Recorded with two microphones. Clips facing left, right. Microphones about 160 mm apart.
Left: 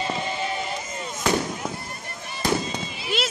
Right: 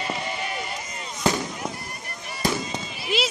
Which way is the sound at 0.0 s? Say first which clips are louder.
Left 2 dB; 25° left (ahead or behind).